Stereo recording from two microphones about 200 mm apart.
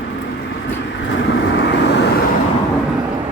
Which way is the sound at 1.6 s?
55° left (ahead or behind).